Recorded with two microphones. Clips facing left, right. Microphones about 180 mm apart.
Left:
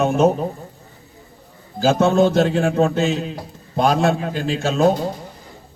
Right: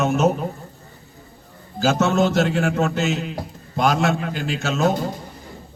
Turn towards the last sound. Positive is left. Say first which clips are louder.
# left 4 dB
turn(degrees=30)  # may be behind; listen again after turning